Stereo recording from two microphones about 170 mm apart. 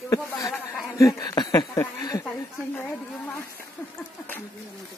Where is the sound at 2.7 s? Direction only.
10° left (ahead or behind).